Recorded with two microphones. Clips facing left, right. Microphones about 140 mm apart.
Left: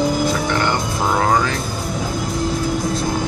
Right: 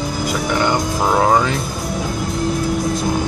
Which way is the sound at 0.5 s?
15° right (ahead or behind).